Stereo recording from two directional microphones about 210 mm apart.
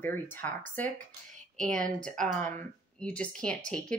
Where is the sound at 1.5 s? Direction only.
40° right (ahead or behind).